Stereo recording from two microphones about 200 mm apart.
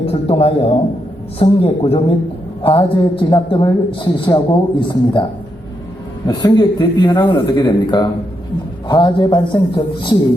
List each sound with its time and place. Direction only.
0.0 s speech: 30° left (ahead or behind)
6.2 s speech: 20° left (ahead or behind)